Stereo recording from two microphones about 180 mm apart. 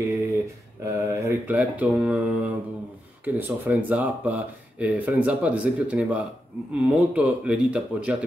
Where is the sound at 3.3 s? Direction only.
10° right (ahead or behind).